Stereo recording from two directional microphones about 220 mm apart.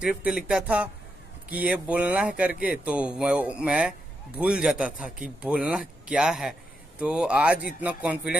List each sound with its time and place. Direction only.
0.0 s speech: 5° right (ahead or behind)